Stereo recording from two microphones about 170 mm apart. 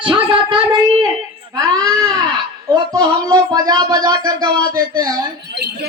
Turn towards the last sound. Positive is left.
turn(degrees=-70)  # may be behind; listen again after turning